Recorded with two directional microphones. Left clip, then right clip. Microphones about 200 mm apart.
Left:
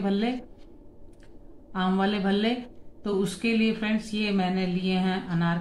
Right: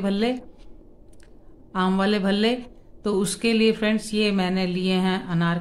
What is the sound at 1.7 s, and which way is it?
Speech, 55° right (ahead or behind).